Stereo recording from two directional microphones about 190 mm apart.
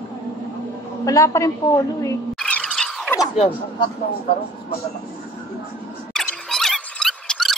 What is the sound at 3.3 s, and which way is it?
Speech, 30° left (ahead or behind).